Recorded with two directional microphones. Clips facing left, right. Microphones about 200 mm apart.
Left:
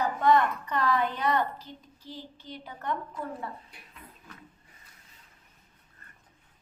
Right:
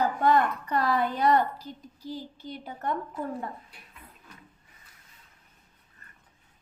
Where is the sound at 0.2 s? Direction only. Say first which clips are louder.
Left 3 dB; 40° right (ahead or behind).